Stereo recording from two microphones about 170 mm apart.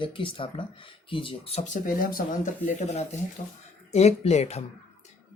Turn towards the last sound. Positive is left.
turn(degrees=40)  # may be behind; listen again after turning